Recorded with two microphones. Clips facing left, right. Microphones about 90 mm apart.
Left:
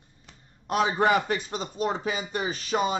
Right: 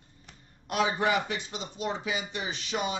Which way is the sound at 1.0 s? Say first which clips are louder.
Left 5 dB; 50° left (ahead or behind).